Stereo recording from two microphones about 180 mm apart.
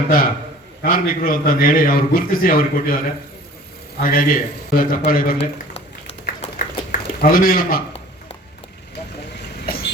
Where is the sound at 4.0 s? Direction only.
50° left (ahead or behind).